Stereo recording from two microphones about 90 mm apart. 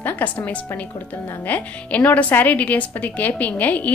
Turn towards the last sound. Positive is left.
turn(degrees=15)  # may be behind; listen again after turning